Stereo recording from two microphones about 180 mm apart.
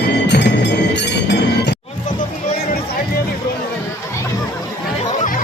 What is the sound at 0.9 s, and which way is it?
Chink, 70° left (ahead or behind).